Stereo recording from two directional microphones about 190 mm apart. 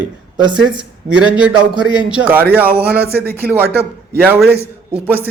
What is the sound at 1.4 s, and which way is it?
A man's voice, 5° right (ahead or behind).